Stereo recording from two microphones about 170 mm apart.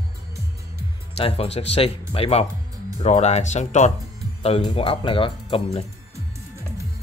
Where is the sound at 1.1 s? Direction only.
35° left (ahead or behind).